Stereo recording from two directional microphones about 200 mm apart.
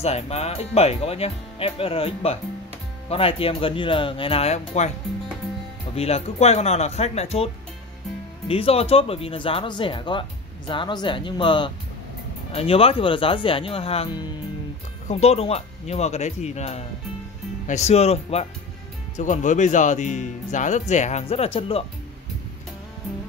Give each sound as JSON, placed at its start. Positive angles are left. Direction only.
{"t": 0.0, "sound": "speech", "side_deg": 30}
{"t": 5.9, "sound": "speech", "side_deg": 30}
{"t": 8.5, "sound": "speech", "side_deg": 30}